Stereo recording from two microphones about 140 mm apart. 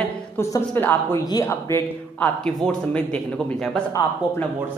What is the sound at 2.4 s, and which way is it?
Speech, 5° left (ahead or behind).